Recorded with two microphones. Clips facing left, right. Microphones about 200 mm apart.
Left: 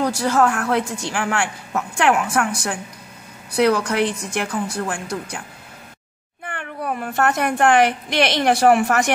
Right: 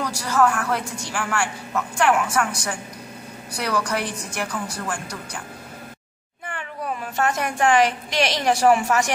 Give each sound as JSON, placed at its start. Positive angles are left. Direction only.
{"t": 0.0, "sound": "a woman's voice", "side_deg": 55}
{"t": 6.4, "sound": "a woman's voice", "side_deg": 55}